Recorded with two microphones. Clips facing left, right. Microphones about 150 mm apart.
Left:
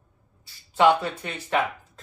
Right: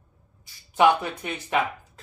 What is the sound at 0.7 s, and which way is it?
Speech, 15° right (ahead or behind).